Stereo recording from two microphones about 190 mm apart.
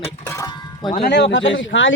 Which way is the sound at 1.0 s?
65° left (ahead or behind).